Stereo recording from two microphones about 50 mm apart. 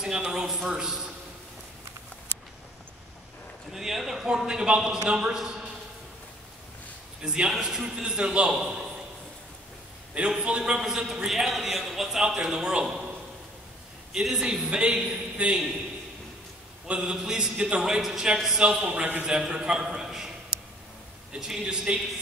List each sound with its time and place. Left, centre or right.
0.0 s a man's voice: centre
3.7 s a man's voice: centre
7.2 s a man's voice: centre
10.4 s speech: centre
11.2 s a man's voice: centre
14.3 s speech: centre
15.5 s a man's voice: centre
16.8 s speech: centre
17.8 s a man's voice: centre
21.4 s a man's voice: centre